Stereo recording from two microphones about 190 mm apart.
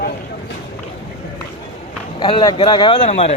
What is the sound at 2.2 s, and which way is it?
Speech, 25° left (ahead or behind).